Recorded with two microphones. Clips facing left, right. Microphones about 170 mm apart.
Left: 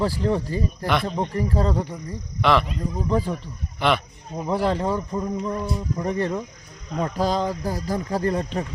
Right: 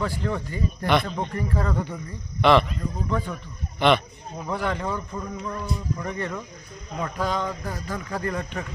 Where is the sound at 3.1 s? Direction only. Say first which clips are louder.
Left 6 dB; 30° left (ahead or behind).